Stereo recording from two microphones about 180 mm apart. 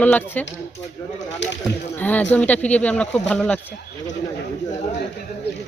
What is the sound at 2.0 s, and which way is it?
Speech, 10° left (ahead or behind).